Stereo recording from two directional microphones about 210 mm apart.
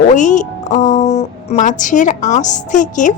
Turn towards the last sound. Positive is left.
turn(degrees=35)  # may be behind; listen again after turning